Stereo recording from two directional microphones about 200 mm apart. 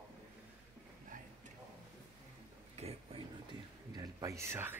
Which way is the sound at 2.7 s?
30° right (ahead or behind).